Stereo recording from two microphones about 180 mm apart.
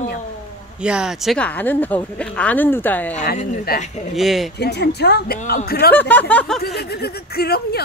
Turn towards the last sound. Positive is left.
turn(degrees=60)  # may be behind; listen again after turning